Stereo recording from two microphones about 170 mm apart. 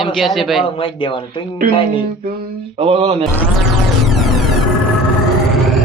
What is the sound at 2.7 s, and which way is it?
Speech, 35° right (ahead or behind).